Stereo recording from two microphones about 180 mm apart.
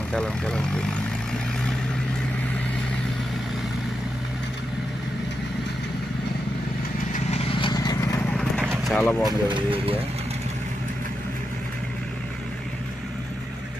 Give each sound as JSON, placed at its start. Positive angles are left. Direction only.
{"t": 0.1, "sound": "speech", "side_deg": 5}
{"t": 7.5, "sound": "vehicle", "side_deg": 25}
{"t": 8.3, "sound": "clip-clop", "side_deg": 5}
{"t": 8.8, "sound": "vehicle", "side_deg": 5}
{"t": 9.2, "sound": "speech", "side_deg": -25}